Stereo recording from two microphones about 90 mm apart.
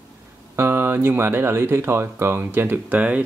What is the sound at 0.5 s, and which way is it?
Speech, 25° right (ahead or behind).